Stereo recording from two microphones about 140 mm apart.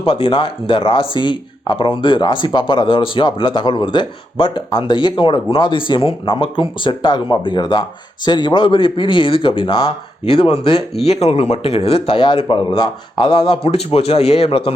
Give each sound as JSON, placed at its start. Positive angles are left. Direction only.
{"t": 0.0, "sound": "speech", "side_deg": 40}